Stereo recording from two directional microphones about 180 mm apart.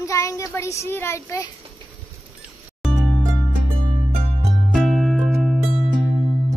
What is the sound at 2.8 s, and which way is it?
Music, centre (ahead or behind).